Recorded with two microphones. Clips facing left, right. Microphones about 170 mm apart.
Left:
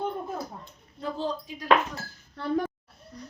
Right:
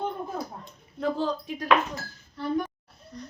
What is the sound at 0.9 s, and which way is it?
Speech, 80° right.